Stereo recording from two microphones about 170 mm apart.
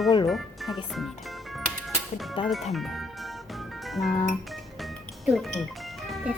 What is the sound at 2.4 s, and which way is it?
Speech, 30° left (ahead or behind).